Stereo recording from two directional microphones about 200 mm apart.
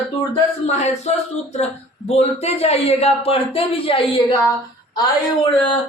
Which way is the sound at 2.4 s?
30° left (ahead or behind).